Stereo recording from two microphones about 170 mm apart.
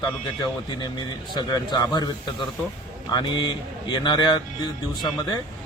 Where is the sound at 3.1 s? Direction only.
25° left (ahead or behind).